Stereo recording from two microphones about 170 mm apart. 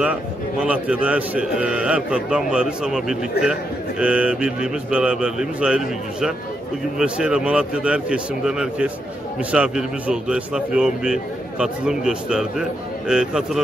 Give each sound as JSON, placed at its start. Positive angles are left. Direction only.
{"t": 0.7, "sound": "a man's voice", "side_deg": -5}